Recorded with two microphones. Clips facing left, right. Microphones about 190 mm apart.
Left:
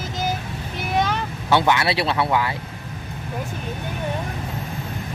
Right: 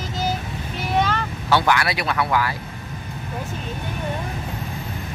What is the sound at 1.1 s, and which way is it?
Speech, 20° left (ahead or behind).